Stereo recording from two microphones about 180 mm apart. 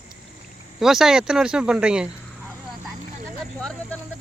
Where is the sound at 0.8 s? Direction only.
Centre (ahead or behind).